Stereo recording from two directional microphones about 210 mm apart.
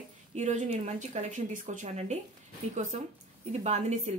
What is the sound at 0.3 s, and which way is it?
A woman's voice, 35° right (ahead or behind).